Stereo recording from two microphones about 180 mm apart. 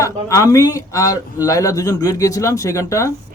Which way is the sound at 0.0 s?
15° left (ahead or behind).